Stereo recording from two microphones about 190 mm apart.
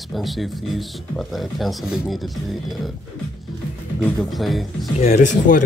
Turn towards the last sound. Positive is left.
turn(degrees=40)  # may be behind; listen again after turning